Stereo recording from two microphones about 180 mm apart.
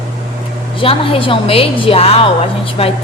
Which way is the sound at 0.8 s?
30° left (ahead or behind).